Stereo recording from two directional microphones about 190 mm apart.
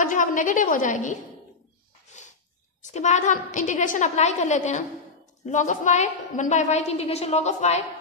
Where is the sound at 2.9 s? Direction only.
40° left (ahead or behind).